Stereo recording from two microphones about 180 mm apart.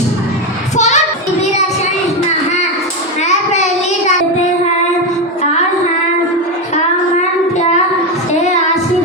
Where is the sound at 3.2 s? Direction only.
40° left (ahead or behind).